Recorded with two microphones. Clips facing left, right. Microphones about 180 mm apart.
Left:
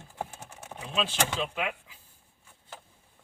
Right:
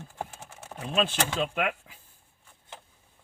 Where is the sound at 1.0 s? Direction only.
55° right (ahead or behind).